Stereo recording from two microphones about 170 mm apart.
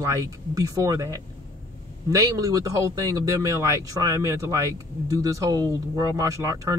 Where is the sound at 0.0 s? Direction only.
20° right (ahead or behind).